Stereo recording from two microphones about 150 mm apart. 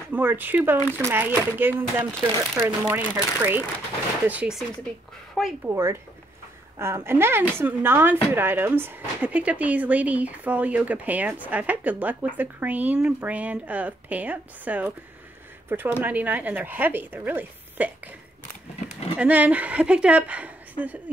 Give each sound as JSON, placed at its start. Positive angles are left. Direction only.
{"t": 0.1, "sound": "a woman's voice", "side_deg": -15}
{"t": 5.7, "sound": "a woman's voice", "side_deg": -20}
{"t": 19.1, "sound": "a woman's voice", "side_deg": -10}